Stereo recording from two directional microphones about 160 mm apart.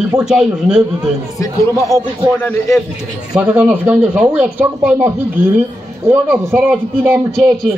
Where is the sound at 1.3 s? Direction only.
20° left (ahead or behind).